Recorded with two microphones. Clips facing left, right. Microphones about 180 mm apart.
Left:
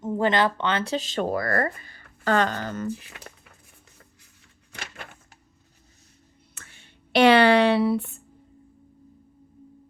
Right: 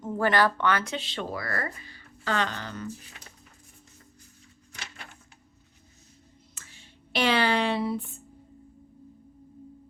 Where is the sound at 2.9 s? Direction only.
70° left (ahead or behind).